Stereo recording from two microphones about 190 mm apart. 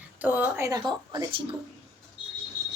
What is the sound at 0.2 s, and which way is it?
Speech, 10° right (ahead or behind).